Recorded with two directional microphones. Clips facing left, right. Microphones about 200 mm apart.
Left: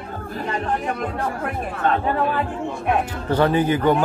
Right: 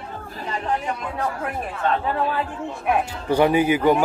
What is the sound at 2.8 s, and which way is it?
A man's voice, 10° right (ahead or behind).